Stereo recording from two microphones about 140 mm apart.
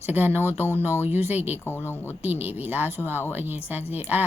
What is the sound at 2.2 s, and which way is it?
Speech, 10° right (ahead or behind).